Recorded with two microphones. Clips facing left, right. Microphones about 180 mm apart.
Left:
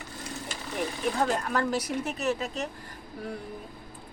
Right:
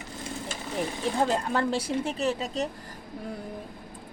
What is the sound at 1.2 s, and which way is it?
Speech, 30° right (ahead or behind).